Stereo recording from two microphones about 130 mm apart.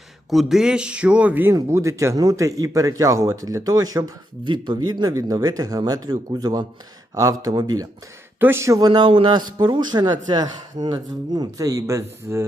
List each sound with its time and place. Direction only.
0.3 s speech: centre (ahead or behind); by 12.5 s 20° right (ahead or behind)